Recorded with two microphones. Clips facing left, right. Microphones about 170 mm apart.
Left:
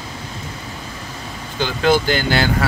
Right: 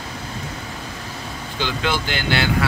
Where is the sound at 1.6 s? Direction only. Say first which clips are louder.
Left 7 dB; 45° left (ahead or behind).